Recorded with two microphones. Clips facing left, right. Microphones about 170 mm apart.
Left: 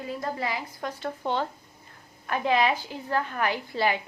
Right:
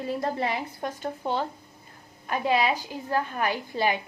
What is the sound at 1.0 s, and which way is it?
A woman's voice, 10° right (ahead or behind).